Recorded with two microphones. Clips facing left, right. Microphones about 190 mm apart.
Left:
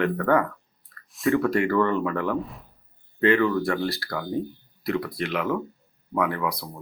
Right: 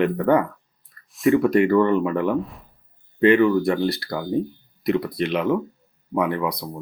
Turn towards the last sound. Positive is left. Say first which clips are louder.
# right 3 dB
turn(degrees=-20)  # may be behind; listen again after turning